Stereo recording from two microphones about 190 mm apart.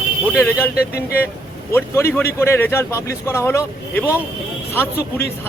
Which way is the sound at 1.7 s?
10° left (ahead or behind).